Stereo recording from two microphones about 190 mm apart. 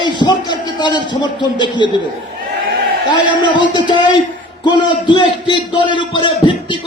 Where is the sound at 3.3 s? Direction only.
25° left (ahead or behind).